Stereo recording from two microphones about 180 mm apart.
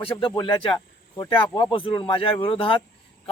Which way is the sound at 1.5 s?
25° left (ahead or behind).